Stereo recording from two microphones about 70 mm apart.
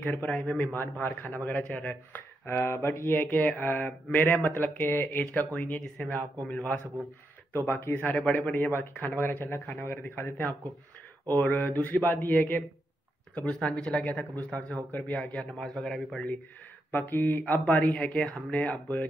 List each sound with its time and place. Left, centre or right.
0.0 s speech: left
7.5 s speech: left
11.5 s speech: left
15.6 s a man's voice: centre
16.9 s speech: left